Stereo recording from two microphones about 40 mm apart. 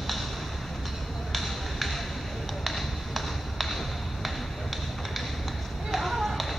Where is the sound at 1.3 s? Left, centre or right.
Centre.